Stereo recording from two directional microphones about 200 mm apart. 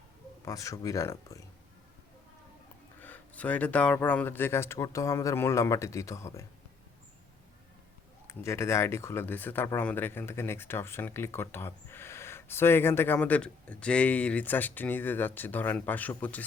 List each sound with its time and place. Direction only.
0.4 s speech: 15° left (ahead or behind)
3.0 s speech: 10° left (ahead or behind)
8.3 s speech: 15° left (ahead or behind)